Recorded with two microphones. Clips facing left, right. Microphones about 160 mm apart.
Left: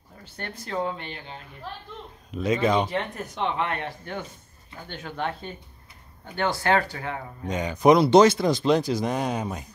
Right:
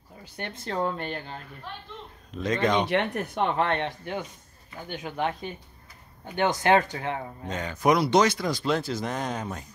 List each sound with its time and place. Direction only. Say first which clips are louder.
0.4 s speech: right 1 dB; 15° right (ahead or behind)
0.8 s speech: right 2 dB; 45° right (ahead or behind)
2.3 s speech: left 2 dB; 10° left (ahead or behind)
2.9 s speech: right 4 dB; 70° right (ahead or behind); by 3.6 s 50° right (ahead or behind)
3.6 s speech: right 3 dB; 30° right (ahead or behind)
4.0 s speech: right 1 dB; 15° right (ahead or behind)
7.4 s speech: left 6 dB; 15° left (ahead or behind)